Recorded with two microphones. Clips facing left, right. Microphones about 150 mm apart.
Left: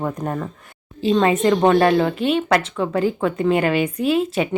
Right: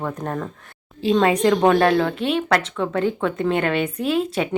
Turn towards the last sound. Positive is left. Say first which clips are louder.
# left 2 dB
turn(degrees=0)  # may be behind; listen again after turning